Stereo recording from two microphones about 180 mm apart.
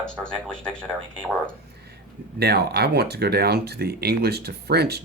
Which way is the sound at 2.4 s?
60° right (ahead or behind).